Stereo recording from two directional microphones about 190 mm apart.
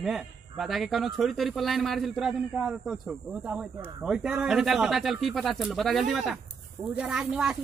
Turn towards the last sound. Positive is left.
turn(degrees=-5)  # may be behind; listen again after turning